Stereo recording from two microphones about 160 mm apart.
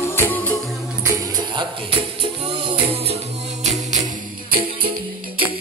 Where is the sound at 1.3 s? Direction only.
30° right (ahead or behind).